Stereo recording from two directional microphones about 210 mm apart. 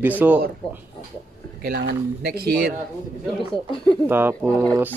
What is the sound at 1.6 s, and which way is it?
Speech, 50° right (ahead or behind).